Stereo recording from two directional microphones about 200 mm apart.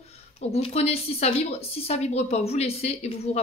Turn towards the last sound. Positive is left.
turn(degrees=30)  # may be behind; listen again after turning